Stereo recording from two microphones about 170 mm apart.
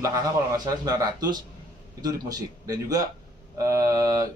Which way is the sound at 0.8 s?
25° right (ahead or behind).